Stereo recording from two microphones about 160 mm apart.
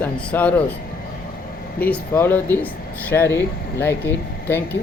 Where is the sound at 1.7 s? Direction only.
10° left (ahead or behind).